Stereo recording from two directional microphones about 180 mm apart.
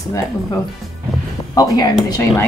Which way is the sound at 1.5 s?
20° left (ahead or behind).